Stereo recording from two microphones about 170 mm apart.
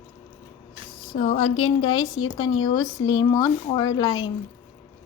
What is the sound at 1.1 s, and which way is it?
Speech, 45° left (ahead or behind).